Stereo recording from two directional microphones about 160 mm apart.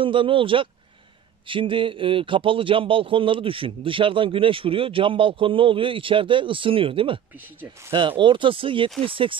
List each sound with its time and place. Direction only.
0.0 s speech: 30° right (ahead or behind)
8.2 s speech: 30° right (ahead or behind)